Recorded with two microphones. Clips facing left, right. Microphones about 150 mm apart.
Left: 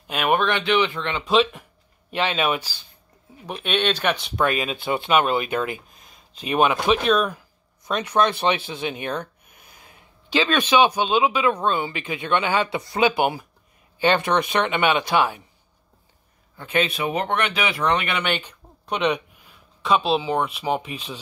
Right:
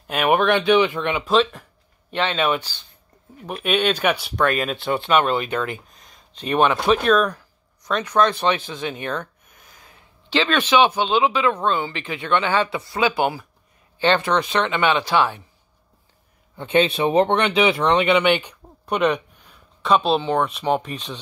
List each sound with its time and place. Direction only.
0.0 s speech: 10° right (ahead or behind)
1.2 s speech: centre (ahead or behind)
3.4 s speech: 5° right (ahead or behind)
4.6 s speech: centre (ahead or behind)
8.1 s speech: 15° left (ahead or behind)
16.5 s speech: 25° right (ahead or behind); by 21.2 s centre (ahead or behind)